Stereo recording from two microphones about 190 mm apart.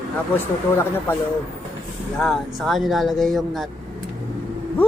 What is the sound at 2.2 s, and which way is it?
Speech, centre (ahead or behind).